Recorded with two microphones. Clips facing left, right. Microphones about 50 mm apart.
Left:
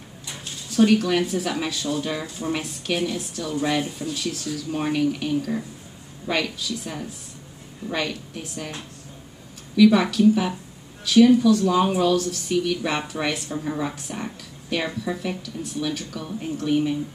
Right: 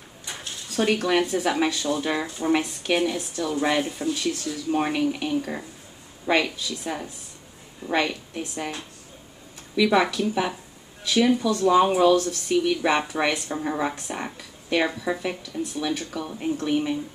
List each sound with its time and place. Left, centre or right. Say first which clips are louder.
0.7 s a woman's voice: left 3 dB; right
9.8 s speech: left 4 dB; centre